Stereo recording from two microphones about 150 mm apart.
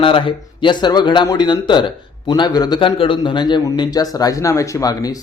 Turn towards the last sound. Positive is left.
turn(degrees=25)  # may be behind; listen again after turning